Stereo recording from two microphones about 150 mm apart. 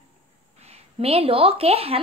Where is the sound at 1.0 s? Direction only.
40° right (ahead or behind).